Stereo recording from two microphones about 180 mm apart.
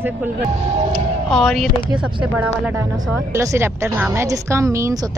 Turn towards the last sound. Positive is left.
turn(degrees=-15)  # may be behind; listen again after turning